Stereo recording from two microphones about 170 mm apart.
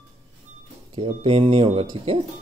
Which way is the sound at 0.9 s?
35° right (ahead or behind).